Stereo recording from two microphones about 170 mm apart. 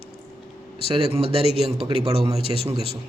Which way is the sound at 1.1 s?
35° right (ahead or behind).